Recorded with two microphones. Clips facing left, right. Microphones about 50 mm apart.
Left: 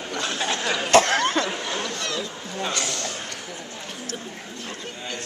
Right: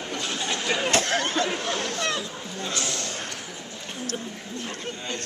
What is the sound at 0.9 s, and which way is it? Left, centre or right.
Chatter, left.